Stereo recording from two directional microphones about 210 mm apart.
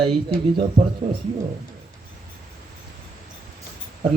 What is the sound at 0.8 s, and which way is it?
Speech, 25° right (ahead or behind).